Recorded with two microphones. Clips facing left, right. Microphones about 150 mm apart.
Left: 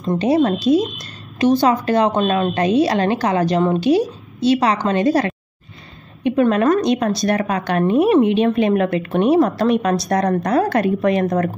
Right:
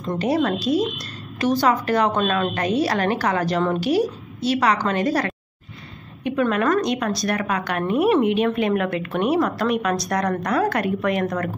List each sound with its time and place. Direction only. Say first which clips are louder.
0.0 s a woman's voice: left 5 dB; 20° left (ahead or behind)